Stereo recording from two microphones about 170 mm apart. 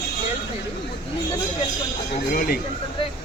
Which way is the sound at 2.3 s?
60° left (ahead or behind).